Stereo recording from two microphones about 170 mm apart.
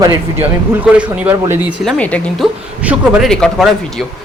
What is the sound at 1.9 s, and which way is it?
Speech, 5° left (ahead or behind).